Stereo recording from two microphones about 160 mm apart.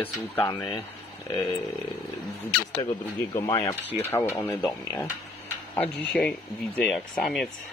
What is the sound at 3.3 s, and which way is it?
Speech, 20° left (ahead or behind).